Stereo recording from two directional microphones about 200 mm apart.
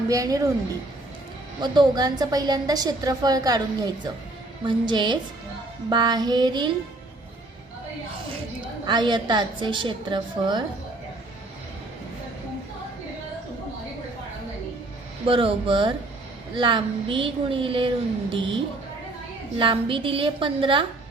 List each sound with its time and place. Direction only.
0.1 s speech: 15° right (ahead or behind)
1.6 s a woman's voice: 20° right (ahead or behind)
4.6 s a woman's voice: 20° right (ahead or behind)
8.9 s a woman's voice: 20° right (ahead or behind)
15.3 s a woman's voice: 25° right (ahead or behind)
19.5 s a woman's voice: 25° right (ahead or behind)